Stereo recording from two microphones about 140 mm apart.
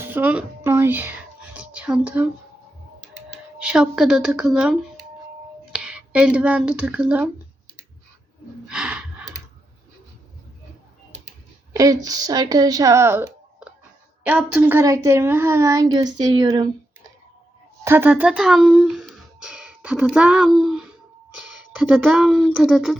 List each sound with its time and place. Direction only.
0.0 s speech: 15° right (ahead or behind)
1.5 s whispering: 10° right (ahead or behind)
3.2 s speech: 5° right (ahead or behind)
8.7 s gasp: 5° right (ahead or behind)
11.7 s a child's voice: 25° right (ahead or behind)
17.8 s speech: 15° right (ahead or behind)